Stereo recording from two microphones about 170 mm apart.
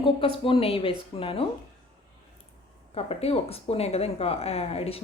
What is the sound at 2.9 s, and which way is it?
Speech, 35° left (ahead or behind).